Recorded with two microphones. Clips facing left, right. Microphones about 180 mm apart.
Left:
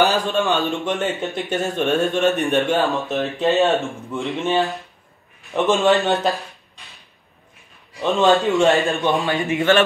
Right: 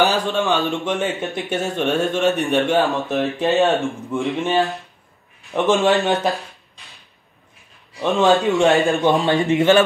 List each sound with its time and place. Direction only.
0.0 s speech: centre (ahead or behind)
7.9 s speech: centre (ahead or behind)
9.2 s a man's voice: 20° right (ahead or behind)